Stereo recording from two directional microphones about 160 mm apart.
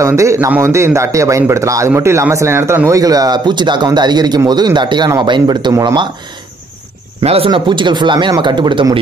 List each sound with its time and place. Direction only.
0.0 s a man's voice: 20° right (ahead or behind)
7.2 s a man's voice: 35° right (ahead or behind)